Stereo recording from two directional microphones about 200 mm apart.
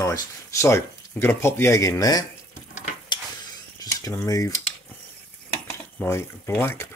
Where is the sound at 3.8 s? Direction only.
15° left (ahead or behind).